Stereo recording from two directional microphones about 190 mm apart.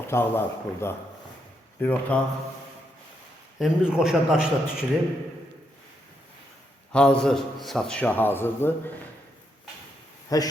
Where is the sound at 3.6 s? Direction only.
5° right (ahead or behind).